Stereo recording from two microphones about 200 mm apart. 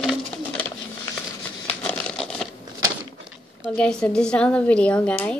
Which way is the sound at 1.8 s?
5° left (ahead or behind).